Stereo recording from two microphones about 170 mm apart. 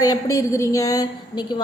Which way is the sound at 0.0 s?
20° left (ahead or behind).